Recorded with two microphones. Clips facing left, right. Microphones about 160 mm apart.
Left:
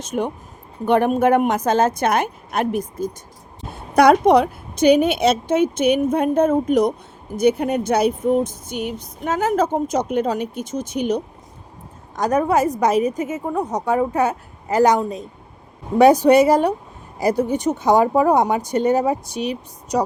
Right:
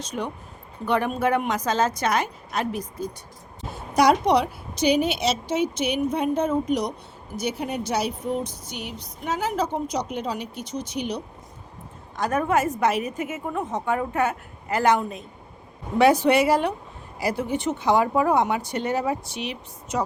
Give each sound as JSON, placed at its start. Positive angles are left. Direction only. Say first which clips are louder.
{"t": 0.0, "sound": "a woman's voice", "louder": "left 7 dB", "side_deg": 50}